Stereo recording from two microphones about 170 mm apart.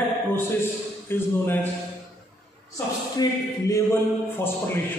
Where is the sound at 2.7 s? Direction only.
20° left (ahead or behind).